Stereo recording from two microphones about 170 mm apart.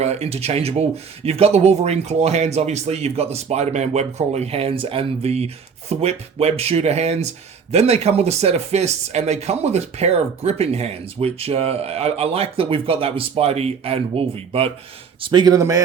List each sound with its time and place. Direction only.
0.0 s a man's voice: 40° right (ahead or behind); by 15.8 s 20° right (ahead or behind)